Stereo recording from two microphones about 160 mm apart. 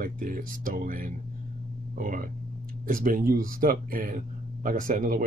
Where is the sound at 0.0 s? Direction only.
60° right (ahead or behind).